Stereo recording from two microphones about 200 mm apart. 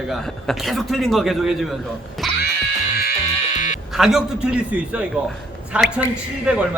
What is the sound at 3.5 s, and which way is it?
Music, 40° left (ahead or behind).